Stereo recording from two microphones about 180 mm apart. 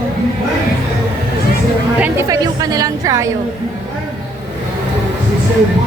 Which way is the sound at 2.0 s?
10° right (ahead or behind).